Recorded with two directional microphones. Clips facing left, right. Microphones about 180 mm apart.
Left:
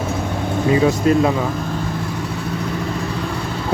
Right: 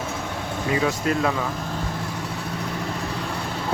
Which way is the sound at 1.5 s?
90° left.